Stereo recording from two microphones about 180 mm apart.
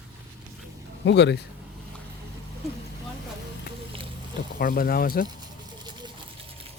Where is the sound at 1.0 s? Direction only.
75° left (ahead or behind).